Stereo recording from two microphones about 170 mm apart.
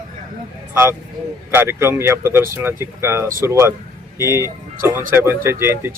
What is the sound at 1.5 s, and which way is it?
A man's voice, 15° right (ahead or behind).